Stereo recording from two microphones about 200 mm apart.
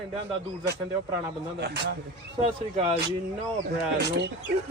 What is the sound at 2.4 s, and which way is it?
Speech, 30° right (ahead or behind).